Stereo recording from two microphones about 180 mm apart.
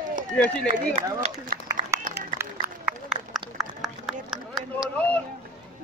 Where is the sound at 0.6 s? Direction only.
45° right (ahead or behind).